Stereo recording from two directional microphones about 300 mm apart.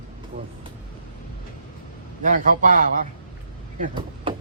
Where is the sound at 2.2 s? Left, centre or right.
Right.